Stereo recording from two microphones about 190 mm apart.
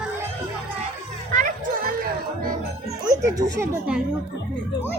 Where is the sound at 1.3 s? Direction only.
45° right (ahead or behind).